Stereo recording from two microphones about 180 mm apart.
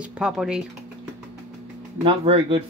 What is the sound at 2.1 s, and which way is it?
Speech, 30° right (ahead or behind).